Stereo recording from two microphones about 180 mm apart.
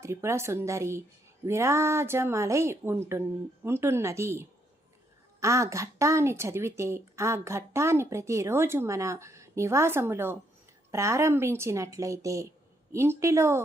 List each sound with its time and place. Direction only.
0.0 s a woman's voice: 15° right (ahead or behind)